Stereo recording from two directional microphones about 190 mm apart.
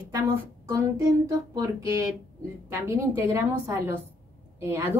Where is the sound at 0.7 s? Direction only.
15° right (ahead or behind).